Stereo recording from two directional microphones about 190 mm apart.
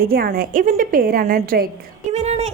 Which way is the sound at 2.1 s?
35° right (ahead or behind).